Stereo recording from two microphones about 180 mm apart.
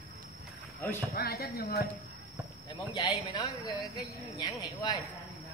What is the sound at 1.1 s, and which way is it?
Speech, 60° left (ahead or behind).